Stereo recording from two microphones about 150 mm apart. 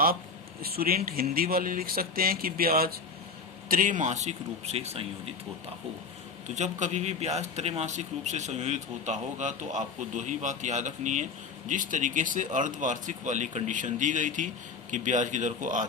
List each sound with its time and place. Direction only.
0.6 s speech: 85° right
3.7 s speech: 60° right (ahead or behind); by 5.3 s 40° right (ahead or behind)
6.5 s speech: 50° right (ahead or behind)